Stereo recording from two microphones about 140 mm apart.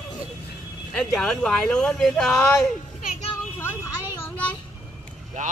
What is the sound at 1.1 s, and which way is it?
Speech, 5° left (ahead or behind).